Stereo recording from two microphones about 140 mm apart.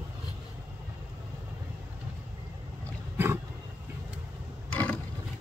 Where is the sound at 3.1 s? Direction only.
15° right (ahead or behind).